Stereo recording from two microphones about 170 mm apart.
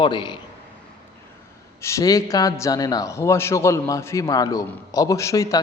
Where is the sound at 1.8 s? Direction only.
20° left (ahead or behind).